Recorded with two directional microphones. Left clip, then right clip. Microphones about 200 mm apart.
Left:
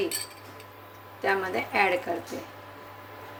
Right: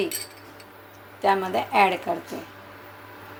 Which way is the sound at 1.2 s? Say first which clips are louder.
Right 5 dB; 25° right (ahead or behind).